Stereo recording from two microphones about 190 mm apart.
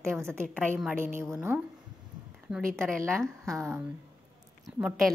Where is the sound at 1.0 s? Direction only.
15° right (ahead or behind).